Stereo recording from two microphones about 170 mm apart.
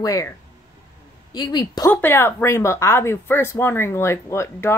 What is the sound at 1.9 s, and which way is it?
Speech, 10° left (ahead or behind).